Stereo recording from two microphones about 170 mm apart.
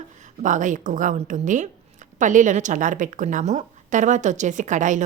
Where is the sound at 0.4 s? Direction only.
45° right (ahead or behind).